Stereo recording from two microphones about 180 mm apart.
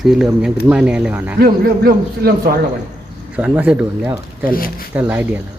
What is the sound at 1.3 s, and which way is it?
A man's voice, 60° right (ahead or behind).